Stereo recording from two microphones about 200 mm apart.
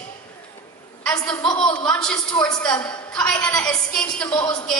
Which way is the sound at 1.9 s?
5° left (ahead or behind).